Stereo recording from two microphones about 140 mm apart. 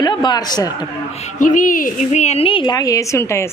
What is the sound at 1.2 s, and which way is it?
A woman's voice, 70° left (ahead or behind).